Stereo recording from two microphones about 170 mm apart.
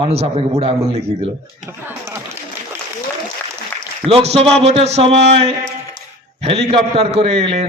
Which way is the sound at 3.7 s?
10° left (ahead or behind).